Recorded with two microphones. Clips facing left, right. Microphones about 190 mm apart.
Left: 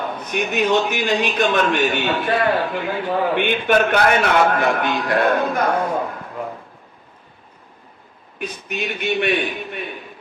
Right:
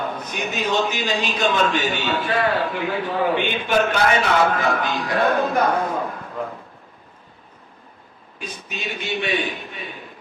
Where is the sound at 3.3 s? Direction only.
60° left (ahead or behind).